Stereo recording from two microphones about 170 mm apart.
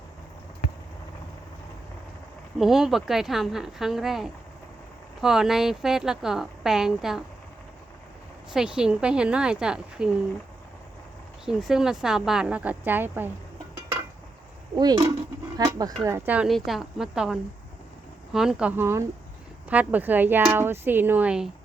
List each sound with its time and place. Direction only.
2.6 s a woman's voice: centre (ahead or behind)
8.5 s a woman's voice: 5° right (ahead or behind)
11.4 s a woman's voice: centre (ahead or behind)
14.8 s a woman's voice: 25° right (ahead or behind); by 17.3 s 5° right (ahead or behind)
18.3 s speech: 5° right (ahead or behind)